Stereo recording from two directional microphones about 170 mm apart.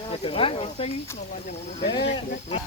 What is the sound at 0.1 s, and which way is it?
Speech, 35° left (ahead or behind).